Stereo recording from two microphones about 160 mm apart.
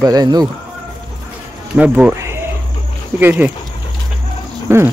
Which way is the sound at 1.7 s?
5° right (ahead or behind).